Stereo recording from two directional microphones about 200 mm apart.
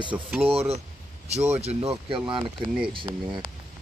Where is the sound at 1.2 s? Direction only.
35° right (ahead or behind).